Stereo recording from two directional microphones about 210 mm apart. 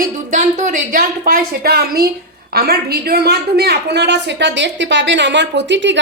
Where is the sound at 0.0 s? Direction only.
35° right (ahead or behind).